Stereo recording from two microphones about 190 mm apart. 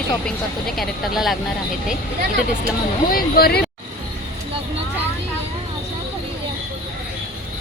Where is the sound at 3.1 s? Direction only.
55° left (ahead or behind).